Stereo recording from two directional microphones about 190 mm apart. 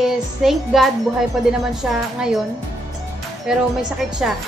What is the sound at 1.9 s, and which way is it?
Speech, 5° right (ahead or behind).